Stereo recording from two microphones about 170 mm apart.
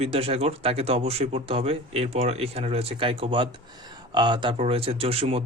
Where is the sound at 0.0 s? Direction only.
35° right (ahead or behind).